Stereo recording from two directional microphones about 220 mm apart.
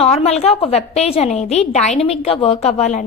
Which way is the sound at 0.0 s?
30° left (ahead or behind).